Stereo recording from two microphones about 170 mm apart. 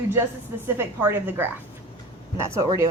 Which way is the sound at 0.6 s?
15° right (ahead or behind).